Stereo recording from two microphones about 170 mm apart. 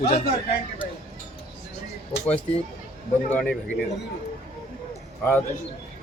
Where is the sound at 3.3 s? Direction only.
5° left (ahead or behind).